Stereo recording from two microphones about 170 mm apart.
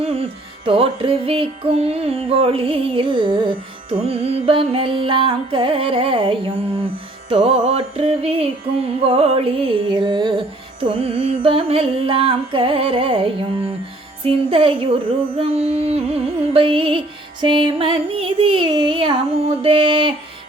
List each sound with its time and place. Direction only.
0.0 s music: 35° right (ahead or behind)